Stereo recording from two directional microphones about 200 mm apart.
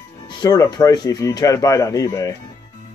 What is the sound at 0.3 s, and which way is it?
Speech, 20° left (ahead or behind).